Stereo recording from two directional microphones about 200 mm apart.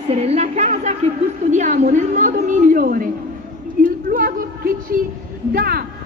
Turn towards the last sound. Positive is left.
turn(degrees=-50)  # may be behind; listen again after turning